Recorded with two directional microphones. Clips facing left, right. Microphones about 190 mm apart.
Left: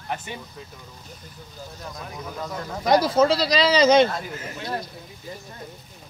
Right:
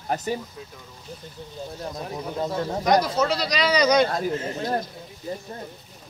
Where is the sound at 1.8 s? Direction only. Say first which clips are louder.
Right 4 dB; 30° right (ahead or behind).